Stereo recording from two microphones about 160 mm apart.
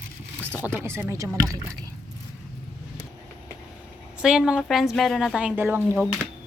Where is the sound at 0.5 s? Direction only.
15° right (ahead or behind).